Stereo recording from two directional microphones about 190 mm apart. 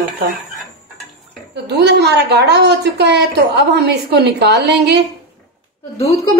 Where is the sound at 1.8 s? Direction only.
60° right (ahead or behind).